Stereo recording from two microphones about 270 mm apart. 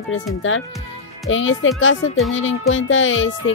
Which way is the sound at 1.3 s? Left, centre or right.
Left.